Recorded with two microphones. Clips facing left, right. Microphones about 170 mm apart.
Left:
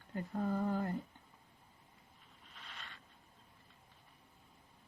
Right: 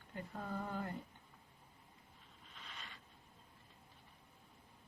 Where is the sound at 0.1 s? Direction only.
40° left (ahead or behind).